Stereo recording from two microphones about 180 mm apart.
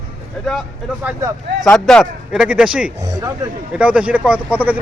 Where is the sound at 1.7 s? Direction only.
5° left (ahead or behind).